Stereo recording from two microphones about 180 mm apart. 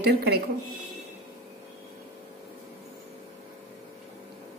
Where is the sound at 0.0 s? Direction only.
60° right (ahead or behind).